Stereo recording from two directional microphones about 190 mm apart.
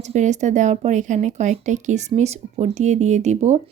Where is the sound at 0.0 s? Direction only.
40° right (ahead or behind).